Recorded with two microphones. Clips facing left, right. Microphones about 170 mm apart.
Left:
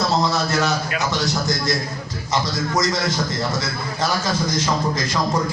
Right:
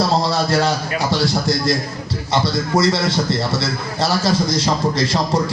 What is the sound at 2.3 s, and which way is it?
A man's voice, 30° right (ahead or behind).